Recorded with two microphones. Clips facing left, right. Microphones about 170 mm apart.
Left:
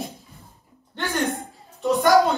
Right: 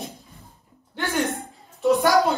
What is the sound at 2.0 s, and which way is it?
Speech, centre (ahead or behind).